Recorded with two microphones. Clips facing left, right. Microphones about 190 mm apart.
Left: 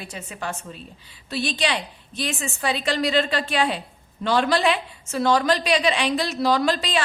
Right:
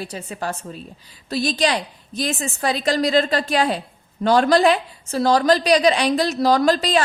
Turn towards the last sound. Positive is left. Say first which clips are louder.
# right 5 dB
turn(degrees=-40)  # may be behind; listen again after turning